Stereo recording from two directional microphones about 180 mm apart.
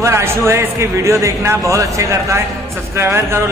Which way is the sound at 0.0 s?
15° right (ahead or behind).